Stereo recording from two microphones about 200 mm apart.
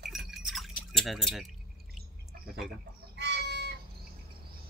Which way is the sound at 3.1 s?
60° right (ahead or behind).